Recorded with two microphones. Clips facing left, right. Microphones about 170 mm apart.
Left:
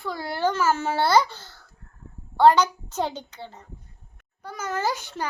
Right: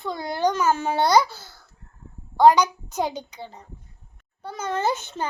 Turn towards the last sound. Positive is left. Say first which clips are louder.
# right 2 dB
turn(degrees=-25)  # may be behind; listen again after turning